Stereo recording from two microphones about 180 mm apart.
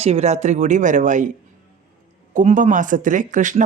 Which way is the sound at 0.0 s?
40° right (ahead or behind).